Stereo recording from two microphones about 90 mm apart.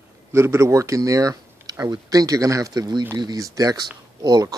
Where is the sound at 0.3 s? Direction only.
30° right (ahead or behind).